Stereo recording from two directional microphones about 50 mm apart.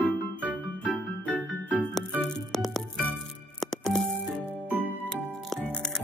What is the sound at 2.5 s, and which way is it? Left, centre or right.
Music, centre.